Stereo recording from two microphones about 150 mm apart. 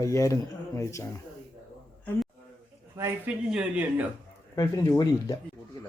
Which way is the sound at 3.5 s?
10° right (ahead or behind).